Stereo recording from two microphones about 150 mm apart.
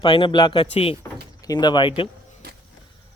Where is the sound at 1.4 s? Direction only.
25° left (ahead or behind).